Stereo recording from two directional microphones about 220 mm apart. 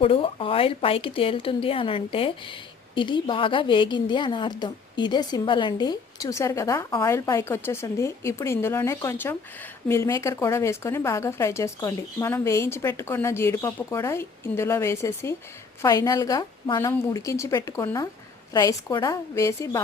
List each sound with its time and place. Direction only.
0.0 s a woman's voice: 25° left (ahead or behind)